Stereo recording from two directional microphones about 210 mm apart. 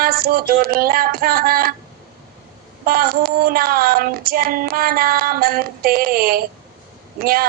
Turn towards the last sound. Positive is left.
turn(degrees=-45)  # may be behind; listen again after turning